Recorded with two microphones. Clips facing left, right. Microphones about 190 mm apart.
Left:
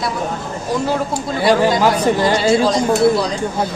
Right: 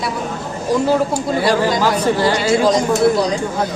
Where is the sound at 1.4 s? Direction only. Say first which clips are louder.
Left 4 dB; 15° left (ahead or behind).